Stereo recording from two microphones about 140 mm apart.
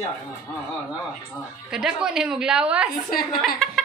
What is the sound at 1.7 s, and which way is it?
A woman's voice, 5° right (ahead or behind).